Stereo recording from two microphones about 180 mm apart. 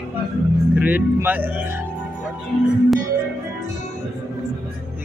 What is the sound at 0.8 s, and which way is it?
A man's voice, 10° right (ahead or behind).